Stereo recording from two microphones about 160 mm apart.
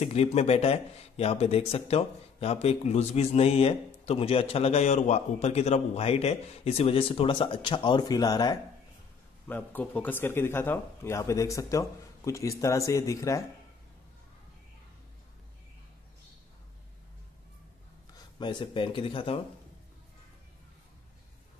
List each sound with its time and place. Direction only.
0.0 s speech: 40° left (ahead or behind); by 8.5 s 25° left (ahead or behind)
9.5 s speech: 10° left (ahead or behind)
18.1 s speech: 30° left (ahead or behind)